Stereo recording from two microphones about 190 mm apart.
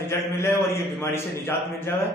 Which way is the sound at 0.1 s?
15° left (ahead or behind).